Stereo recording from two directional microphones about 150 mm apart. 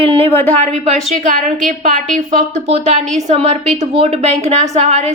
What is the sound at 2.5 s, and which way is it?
A woman's voice, 50° right (ahead or behind).